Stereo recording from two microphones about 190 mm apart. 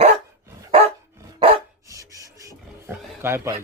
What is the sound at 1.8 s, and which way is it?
Filing, 15° right (ahead or behind).